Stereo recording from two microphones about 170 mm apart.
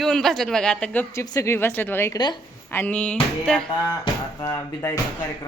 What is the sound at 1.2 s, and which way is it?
Music, 20° left (ahead or behind).